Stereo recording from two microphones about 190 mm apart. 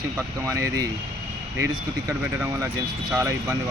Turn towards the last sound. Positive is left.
turn(degrees=-15)  # may be behind; listen again after turning